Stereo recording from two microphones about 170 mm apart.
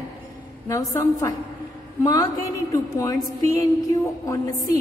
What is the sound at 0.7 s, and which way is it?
Speech, 20° left (ahead or behind).